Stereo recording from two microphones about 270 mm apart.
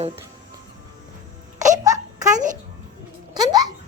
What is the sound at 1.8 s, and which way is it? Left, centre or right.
Child singing, centre.